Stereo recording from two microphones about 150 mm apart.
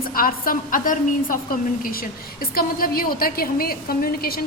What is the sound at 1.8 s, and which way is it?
A woman's voice, 75° left (ahead or behind).